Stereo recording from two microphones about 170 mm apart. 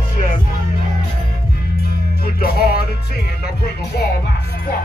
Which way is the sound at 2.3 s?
65° left (ahead or behind).